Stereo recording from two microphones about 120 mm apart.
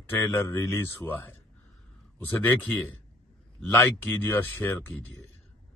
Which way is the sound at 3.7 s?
15° left (ahead or behind).